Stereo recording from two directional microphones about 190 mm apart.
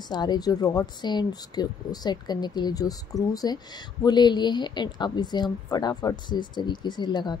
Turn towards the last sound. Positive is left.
turn(degrees=25)  # may be behind; listen again after turning